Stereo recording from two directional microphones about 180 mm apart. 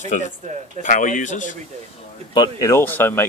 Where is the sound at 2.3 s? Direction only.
20° left (ahead or behind).